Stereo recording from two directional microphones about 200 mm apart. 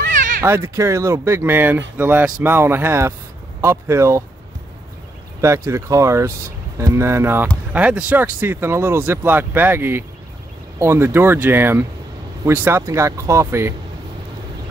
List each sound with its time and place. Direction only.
0.1 s cat: 40° right (ahead or behind)
0.4 s speech: 15° right (ahead or behind)
5.7 s speech: 15° right (ahead or behind)